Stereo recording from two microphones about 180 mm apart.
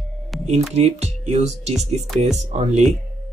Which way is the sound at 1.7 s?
Centre (ahead or behind).